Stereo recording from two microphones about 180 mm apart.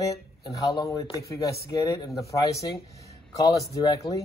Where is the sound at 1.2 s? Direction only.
15° left (ahead or behind).